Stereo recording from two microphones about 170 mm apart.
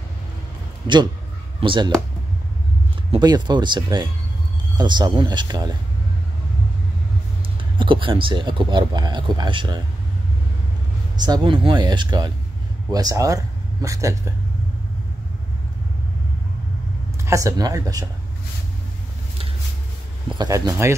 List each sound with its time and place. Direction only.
1.6 s speech: 30° right (ahead or behind)
3.1 s speech: 25° right (ahead or behind)
7.7 s speech: 30° right (ahead or behind)
11.2 s speech: 25° right (ahead or behind)
17.2 s speech: 20° right (ahead or behind)
20.3 s speech: 20° right (ahead or behind)